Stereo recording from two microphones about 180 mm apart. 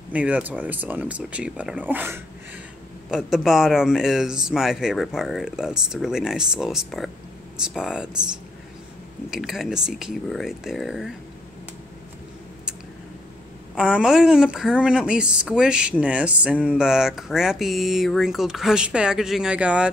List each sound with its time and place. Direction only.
0.1 s speech: 10° right (ahead or behind)
9.3 s speech: centre (ahead or behind)
13.7 s speech: 5° right (ahead or behind)